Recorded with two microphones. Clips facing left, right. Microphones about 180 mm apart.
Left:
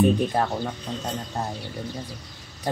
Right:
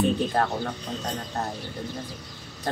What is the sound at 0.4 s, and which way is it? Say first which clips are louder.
Speech: even; 10° left (ahead or behind).